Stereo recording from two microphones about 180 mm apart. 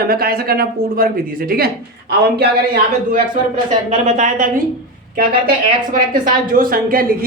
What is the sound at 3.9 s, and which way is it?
Speech, 40° right (ahead or behind).